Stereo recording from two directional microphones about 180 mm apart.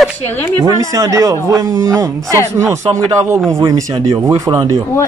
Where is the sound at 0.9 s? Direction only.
15° right (ahead or behind).